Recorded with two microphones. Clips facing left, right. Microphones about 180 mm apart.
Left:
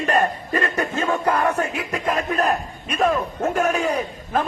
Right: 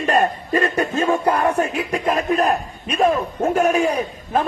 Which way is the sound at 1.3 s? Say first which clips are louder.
Right 2 dB; 30° right (ahead or behind).